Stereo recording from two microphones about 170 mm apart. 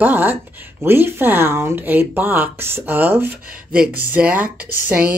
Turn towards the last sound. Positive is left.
turn(degrees=-10)  # may be behind; listen again after turning